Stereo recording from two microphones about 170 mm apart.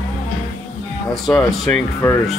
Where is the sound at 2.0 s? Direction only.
15° left (ahead or behind).